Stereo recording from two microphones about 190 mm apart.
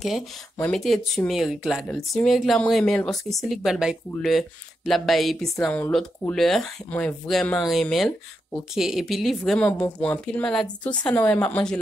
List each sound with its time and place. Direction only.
0.0 s speech: centre (ahead or behind)